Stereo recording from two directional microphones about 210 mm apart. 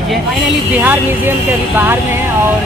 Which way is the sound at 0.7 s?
10° right (ahead or behind).